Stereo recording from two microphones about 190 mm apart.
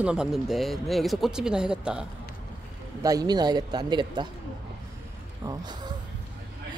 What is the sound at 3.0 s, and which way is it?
A man's voice, 20° right (ahead or behind).